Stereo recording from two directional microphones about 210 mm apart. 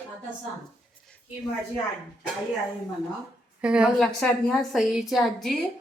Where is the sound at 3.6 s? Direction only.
5° right (ahead or behind).